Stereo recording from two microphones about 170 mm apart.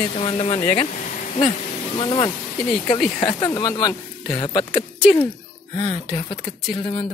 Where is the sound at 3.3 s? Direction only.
20° left (ahead or behind).